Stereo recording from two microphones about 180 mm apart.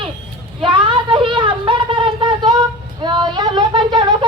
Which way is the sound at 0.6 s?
25° right (ahead or behind).